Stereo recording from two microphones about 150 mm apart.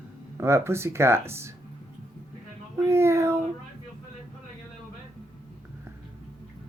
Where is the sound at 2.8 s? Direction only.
15° right (ahead or behind).